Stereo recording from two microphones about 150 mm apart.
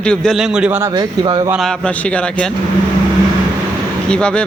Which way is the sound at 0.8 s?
25° right (ahead or behind).